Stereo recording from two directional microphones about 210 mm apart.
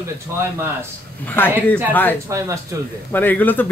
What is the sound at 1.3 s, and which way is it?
Speech, 10° left (ahead or behind).